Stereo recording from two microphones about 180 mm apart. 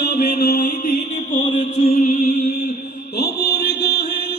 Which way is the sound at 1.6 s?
45° left (ahead or behind).